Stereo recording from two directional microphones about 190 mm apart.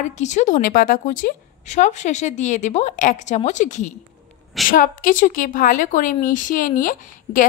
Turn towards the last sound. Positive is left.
turn(degrees=45)  # may be behind; listen again after turning